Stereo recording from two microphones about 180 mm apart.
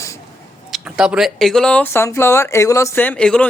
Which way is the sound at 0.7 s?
5° right (ahead or behind).